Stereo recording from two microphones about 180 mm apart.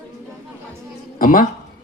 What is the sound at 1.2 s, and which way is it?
Speech, 50° left (ahead or behind).